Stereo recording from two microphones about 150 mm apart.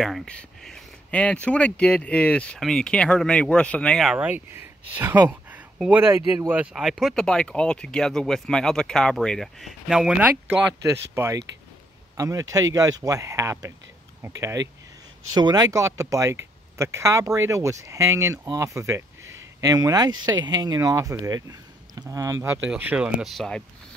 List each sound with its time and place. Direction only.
0.0 s speech: 5° left (ahead or behind)
10.8 s speech: 20° right (ahead or behind); by 23.6 s centre (ahead or behind)